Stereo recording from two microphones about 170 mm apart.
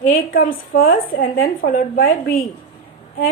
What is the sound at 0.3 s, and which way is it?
A woman's voice, 55° left (ahead or behind).